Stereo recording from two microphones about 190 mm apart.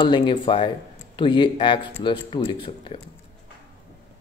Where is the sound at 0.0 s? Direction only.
25° left (ahead or behind).